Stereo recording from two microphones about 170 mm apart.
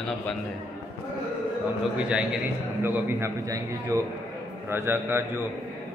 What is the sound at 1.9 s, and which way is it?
A man's voice, 5° right (ahead or behind).